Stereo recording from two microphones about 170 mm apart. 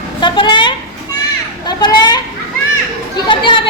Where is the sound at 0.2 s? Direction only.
30° left (ahead or behind).